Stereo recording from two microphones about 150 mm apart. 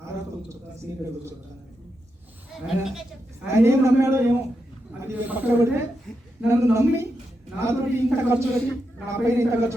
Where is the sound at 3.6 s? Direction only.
15° right (ahead or behind).